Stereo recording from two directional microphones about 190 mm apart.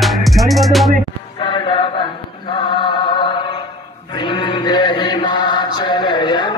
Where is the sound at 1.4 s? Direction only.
25° left (ahead or behind).